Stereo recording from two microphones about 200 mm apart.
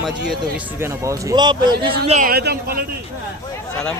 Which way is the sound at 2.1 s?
40° right (ahead or behind).